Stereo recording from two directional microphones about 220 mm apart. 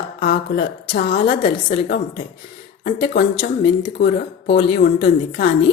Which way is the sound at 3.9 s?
45° left (ahead or behind).